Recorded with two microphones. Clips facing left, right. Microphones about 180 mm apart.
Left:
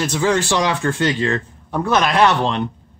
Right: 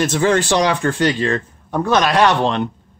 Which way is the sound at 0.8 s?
20° left (ahead or behind).